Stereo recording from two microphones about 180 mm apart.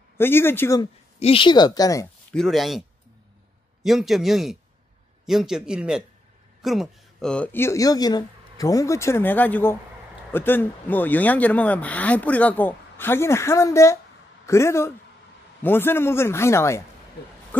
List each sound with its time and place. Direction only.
0.2 s speech: 10° left (ahead or behind)
1.2 s speech: 30° left (ahead or behind)
2.3 s speech: centre (ahead or behind)
3.8 s a man's voice: centre (ahead or behind); by 16.8 s 15° left (ahead or behind)